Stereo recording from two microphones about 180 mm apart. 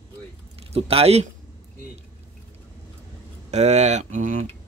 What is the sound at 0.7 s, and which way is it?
Speech, 35° right (ahead or behind).